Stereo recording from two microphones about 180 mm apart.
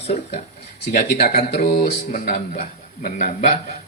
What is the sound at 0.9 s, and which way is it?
Speech, 60° left (ahead or behind).